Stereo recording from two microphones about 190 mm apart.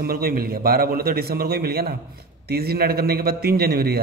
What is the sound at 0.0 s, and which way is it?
A man's voice, 50° right (ahead or behind).